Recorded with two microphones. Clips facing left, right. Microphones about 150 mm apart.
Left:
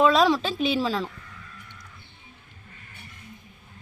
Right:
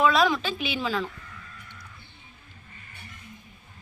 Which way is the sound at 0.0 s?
30° left (ahead or behind).